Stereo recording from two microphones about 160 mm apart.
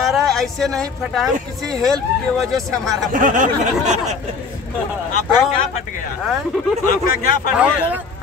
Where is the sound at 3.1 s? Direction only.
55° right (ahead or behind).